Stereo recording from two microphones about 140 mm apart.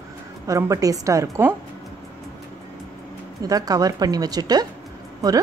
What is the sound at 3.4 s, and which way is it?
A woman's voice, 25° right (ahead or behind).